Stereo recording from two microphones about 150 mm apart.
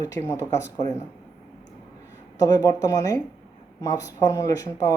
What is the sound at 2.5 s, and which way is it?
Speech, 25° left (ahead or behind).